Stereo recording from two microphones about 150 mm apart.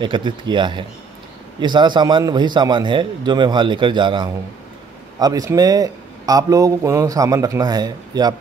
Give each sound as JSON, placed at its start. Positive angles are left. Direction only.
{"t": 0.0, "sound": "a man's voice", "side_deg": -30}